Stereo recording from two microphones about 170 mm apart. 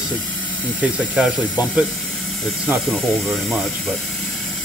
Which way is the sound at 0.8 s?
5° right (ahead or behind).